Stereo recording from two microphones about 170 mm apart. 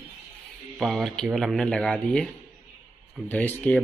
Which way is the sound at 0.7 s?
Centre (ahead or behind).